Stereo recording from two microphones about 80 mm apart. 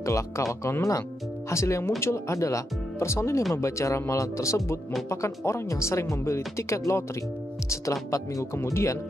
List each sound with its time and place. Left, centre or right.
0.0 s speech: left